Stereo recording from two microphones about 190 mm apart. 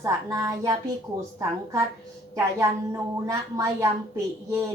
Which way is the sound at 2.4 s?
15° right (ahead or behind).